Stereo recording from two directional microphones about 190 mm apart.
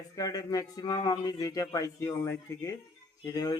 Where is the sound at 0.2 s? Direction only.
20° left (ahead or behind).